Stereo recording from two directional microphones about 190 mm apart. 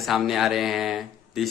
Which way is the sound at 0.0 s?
Centre (ahead or behind).